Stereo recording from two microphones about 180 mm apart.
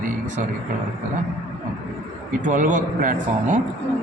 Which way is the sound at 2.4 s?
45° right (ahead or behind).